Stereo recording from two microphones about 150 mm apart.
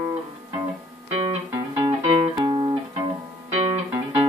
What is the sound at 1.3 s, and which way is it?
Music, 40° right (ahead or behind).